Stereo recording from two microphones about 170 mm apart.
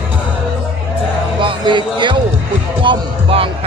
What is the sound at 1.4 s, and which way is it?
Basketball bounce, 25° right (ahead or behind).